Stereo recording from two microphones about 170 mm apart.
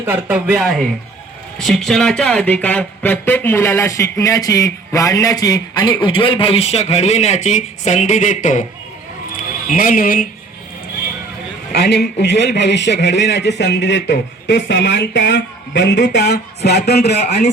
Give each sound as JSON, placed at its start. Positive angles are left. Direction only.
{"t": 0.0, "sound": "speech", "side_deg": -10}
{"t": 9.6, "sound": "speech", "side_deg": 55}
{"t": 11.7, "sound": "a man's voice", "side_deg": 75}